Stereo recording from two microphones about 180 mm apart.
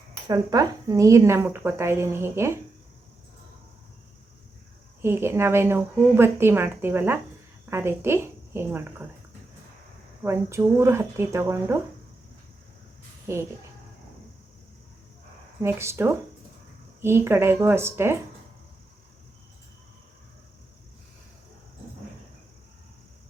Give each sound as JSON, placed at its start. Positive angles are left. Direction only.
{"t": 0.3, "sound": "speech", "side_deg": -20}
{"t": 5.0, "sound": "speech", "side_deg": -15}
{"t": 10.2, "sound": "speech", "side_deg": -15}
{"t": 15.6, "sound": "speech", "side_deg": -15}